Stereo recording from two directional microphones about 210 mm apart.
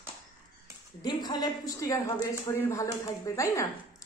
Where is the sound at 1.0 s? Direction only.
20° left (ahead or behind).